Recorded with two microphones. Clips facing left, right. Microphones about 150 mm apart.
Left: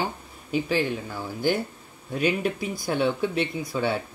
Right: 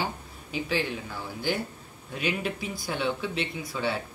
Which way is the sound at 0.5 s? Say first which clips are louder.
Left 5 dB; 45° left (ahead or behind).